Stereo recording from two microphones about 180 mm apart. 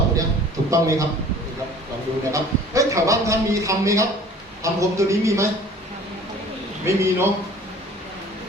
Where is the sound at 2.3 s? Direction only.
15° right (ahead or behind).